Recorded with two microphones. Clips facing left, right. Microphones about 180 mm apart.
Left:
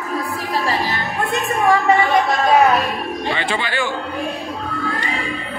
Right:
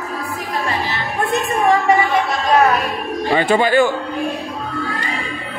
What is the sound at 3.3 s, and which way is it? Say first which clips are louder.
Speech: right 9 dB; 45° right (ahead or behind).